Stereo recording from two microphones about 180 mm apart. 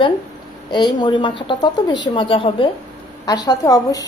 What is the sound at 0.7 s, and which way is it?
A woman's voice, 25° left (ahead or behind).